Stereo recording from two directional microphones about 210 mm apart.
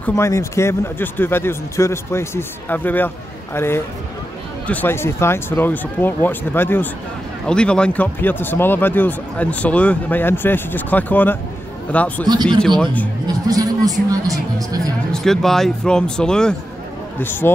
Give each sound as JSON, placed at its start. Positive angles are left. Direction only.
{"t": 0.0, "sound": "speech", "side_deg": 15}
{"t": 13.5, "sound": "a sound", "side_deg": -15}
{"t": 14.1, "sound": "speech", "side_deg": -15}
{"t": 15.1, "sound": "speech", "side_deg": 0}